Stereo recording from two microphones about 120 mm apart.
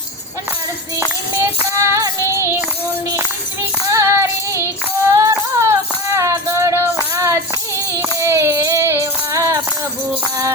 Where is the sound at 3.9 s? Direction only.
25° right (ahead or behind).